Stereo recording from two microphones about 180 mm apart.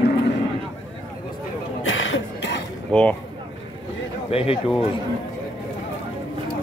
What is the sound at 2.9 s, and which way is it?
Speech, 5° left (ahead or behind).